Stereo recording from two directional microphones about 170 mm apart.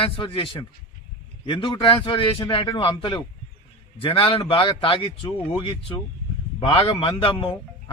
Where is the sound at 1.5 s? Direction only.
30° left (ahead or behind).